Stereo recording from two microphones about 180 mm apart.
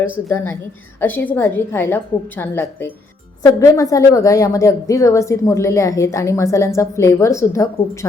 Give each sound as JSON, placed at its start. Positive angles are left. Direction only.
{"t": 0.0, "sound": "a woman's voice", "side_deg": 10}